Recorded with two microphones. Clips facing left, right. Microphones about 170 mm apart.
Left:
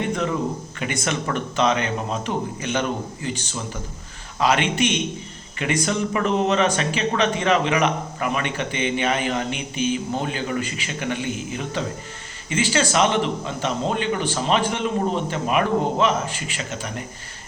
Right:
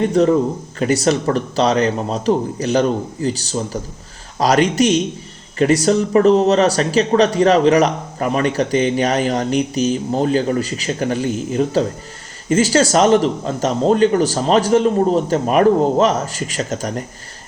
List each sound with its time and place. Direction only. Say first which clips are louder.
0.1 s speech: right 10 dB; 35° right (ahead or behind)